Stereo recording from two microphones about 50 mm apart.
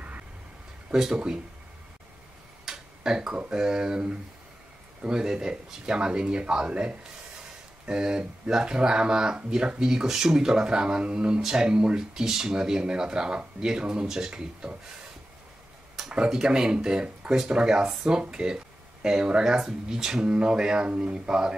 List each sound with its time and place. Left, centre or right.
0.9 s speech: centre
2.6 s speech: centre
16.1 s speech: right